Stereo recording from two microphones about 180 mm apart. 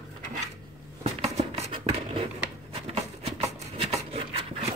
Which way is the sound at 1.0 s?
35° right (ahead or behind).